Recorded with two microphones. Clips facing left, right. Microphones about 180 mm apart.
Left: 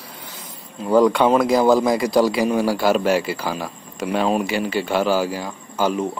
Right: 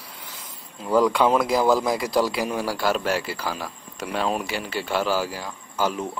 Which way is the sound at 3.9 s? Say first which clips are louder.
Left 6 dB; 5° left (ahead or behind).